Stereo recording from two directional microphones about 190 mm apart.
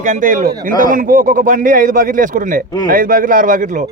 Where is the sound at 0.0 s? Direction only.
45° right (ahead or behind).